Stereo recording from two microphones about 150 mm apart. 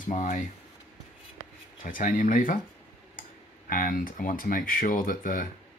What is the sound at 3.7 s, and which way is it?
Speech, 65° left (ahead or behind).